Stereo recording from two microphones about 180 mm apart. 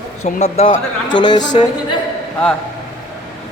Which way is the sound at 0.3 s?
40° left (ahead or behind).